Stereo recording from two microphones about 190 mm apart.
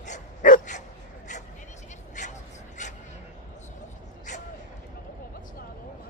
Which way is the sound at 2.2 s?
40° left (ahead or behind).